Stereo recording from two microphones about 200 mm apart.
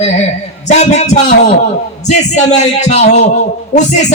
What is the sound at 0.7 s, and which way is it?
Speech, 35° left (ahead or behind).